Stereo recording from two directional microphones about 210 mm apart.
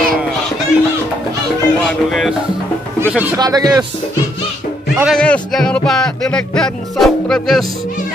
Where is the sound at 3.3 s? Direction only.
15° right (ahead or behind).